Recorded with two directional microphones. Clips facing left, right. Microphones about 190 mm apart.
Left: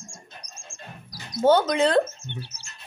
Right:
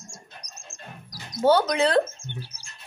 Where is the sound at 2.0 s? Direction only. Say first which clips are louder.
Left 1 dB; 10° right (ahead or behind).